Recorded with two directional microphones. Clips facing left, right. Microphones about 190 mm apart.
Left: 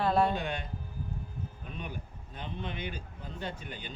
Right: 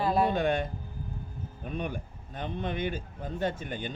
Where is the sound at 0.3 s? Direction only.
50° right (ahead or behind).